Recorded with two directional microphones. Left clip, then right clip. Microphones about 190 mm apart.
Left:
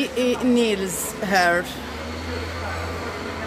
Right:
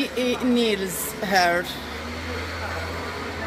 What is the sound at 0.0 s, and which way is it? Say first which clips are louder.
Speech: left 2 dB; centre (ahead or behind).